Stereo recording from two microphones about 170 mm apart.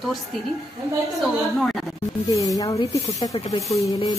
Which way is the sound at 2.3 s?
20° left (ahead or behind).